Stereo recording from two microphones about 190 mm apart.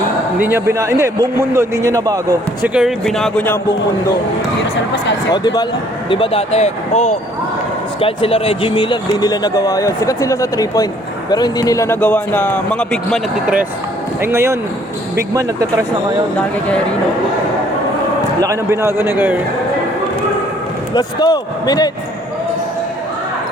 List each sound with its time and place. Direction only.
0.3 s a man's voice: 10° right (ahead or behind)
2.7 s speech: centre (ahead or behind)
5.3 s a man's voice: 20° left (ahead or behind); by 14.6 s 15° right (ahead or behind)
16.4 s speech: 5° left (ahead or behind)
18.3 s a man's voice: 15° right (ahead or behind)
20.9 s speech: 20° left (ahead or behind)